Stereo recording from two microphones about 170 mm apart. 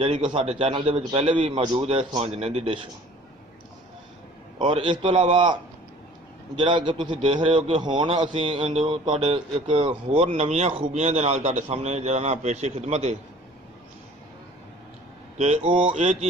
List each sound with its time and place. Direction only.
0.0 s a man's voice: 35° right (ahead or behind)
4.6 s a man's voice: 30° right (ahead or behind)
15.3 s a man's voice: 40° right (ahead or behind)